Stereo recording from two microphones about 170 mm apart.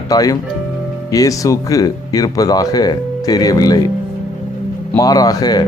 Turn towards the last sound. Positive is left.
turn(degrees=25)  # may be behind; listen again after turning